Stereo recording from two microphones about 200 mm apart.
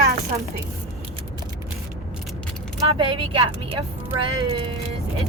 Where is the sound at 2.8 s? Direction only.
30° right (ahead or behind).